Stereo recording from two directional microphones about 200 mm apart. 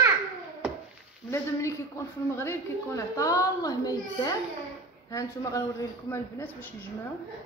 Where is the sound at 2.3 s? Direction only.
15° left (ahead or behind).